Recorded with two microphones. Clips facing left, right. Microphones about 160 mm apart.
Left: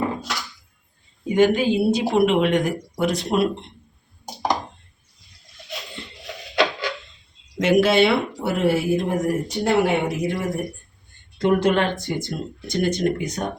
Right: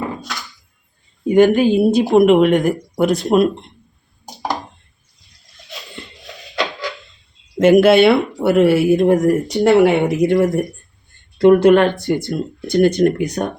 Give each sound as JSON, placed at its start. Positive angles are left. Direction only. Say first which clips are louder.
{"t": 1.3, "sound": "a woman's voice", "louder": "right 6 dB", "side_deg": -55}
{"t": 7.6, "sound": "speech", "louder": "right 7 dB", "side_deg": -50}
{"t": 11.3, "sound": "speech", "louder": "right 9 dB", "side_deg": -60}